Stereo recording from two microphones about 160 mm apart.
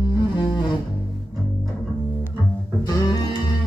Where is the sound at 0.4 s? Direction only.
30° left (ahead or behind).